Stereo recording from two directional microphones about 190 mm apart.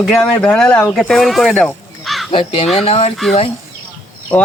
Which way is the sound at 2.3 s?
30° left (ahead or behind).